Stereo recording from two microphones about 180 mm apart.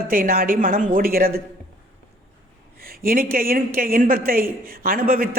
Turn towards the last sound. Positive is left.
turn(degrees=-55)  # may be behind; listen again after turning